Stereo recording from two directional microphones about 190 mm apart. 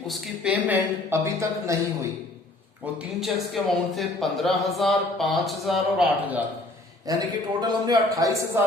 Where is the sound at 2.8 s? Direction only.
Centre (ahead or behind).